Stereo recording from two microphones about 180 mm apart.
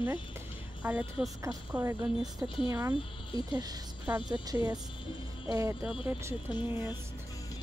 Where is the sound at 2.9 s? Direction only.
25° left (ahead or behind).